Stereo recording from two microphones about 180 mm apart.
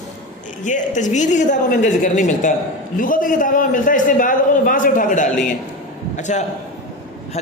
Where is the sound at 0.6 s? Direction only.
45° left (ahead or behind).